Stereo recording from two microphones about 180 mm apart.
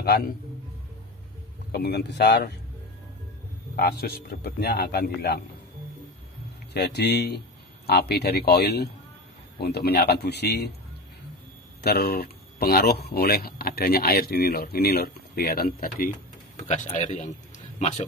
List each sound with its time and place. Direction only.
0.0 s a man's voice: 55° left (ahead or behind)
1.7 s speech: 60° left (ahead or behind)
3.7 s speech: 60° left (ahead or behind)
6.7 s speech: 65° left (ahead or behind)
11.8 s speech: 60° left (ahead or behind)
16.5 s speech: 40° left (ahead or behind)